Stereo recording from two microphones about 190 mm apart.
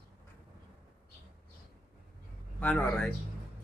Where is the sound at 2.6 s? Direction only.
10° left (ahead or behind).